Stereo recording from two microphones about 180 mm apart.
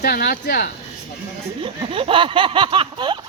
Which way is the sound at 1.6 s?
30° right (ahead or behind).